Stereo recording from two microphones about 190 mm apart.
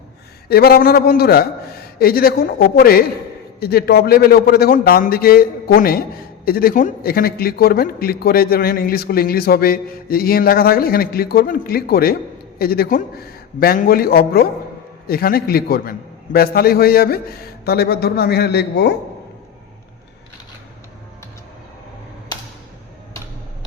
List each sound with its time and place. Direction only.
0.4 s a man's voice: 55° left (ahead or behind)